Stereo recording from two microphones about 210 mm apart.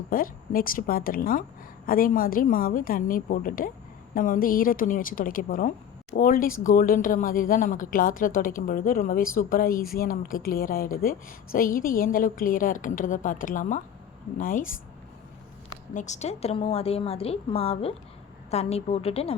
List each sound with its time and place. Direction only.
0.1 s a woman's voice: 45° left (ahead or behind)
16.0 s a woman's voice: 35° left (ahead or behind)